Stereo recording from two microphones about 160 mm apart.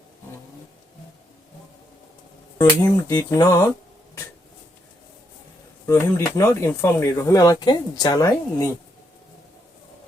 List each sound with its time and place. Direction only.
2.6 s speech: 25° left (ahead or behind)
5.8 s speech: 20° left (ahead or behind)